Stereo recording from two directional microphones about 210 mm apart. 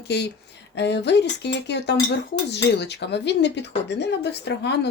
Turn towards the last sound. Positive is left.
turn(degrees=55)  # may be behind; listen again after turning